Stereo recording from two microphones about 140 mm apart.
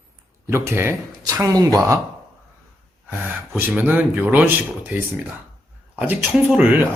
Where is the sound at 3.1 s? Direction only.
15° right (ahead or behind).